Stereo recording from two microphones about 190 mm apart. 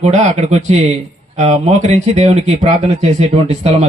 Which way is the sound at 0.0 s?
40° right (ahead or behind).